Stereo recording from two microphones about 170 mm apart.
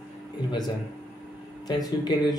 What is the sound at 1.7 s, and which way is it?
Speech, 25° left (ahead or behind).